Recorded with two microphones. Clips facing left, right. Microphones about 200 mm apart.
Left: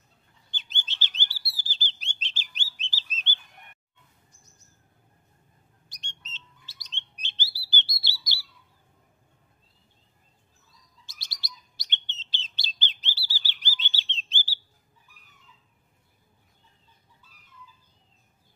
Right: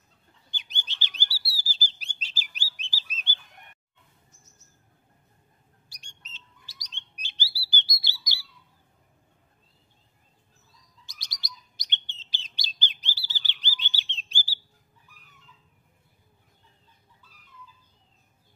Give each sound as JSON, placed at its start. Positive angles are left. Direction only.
{"t": 0.5, "sound": "bird", "side_deg": -15}
{"t": 5.9, "sound": "bird", "side_deg": -10}
{"t": 8.0, "sound": "a sound", "side_deg": -15}
{"t": 11.1, "sound": "bird", "side_deg": -15}